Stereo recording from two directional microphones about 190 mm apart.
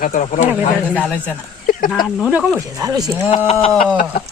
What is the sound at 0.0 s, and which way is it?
Speech, 40° left (ahead or behind).